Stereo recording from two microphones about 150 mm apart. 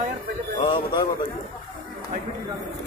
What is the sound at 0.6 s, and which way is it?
Speech, 30° left (ahead or behind).